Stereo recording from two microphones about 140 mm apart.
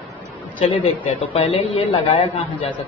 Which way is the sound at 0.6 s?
50° left (ahead or behind).